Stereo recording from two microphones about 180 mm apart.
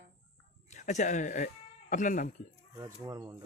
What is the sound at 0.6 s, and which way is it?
Speech, 40° left (ahead or behind).